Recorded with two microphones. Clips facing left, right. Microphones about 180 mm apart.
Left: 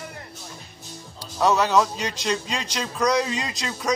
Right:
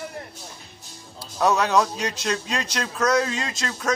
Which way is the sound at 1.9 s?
10° right (ahead or behind).